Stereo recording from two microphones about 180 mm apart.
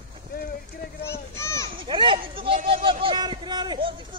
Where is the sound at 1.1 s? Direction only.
15° left (ahead or behind).